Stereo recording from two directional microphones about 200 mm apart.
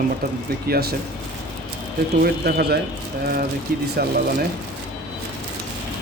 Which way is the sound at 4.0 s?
50° right (ahead or behind).